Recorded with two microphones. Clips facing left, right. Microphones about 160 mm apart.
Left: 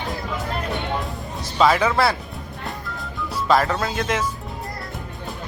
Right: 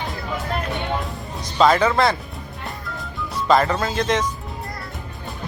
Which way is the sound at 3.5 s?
Centre (ahead or behind).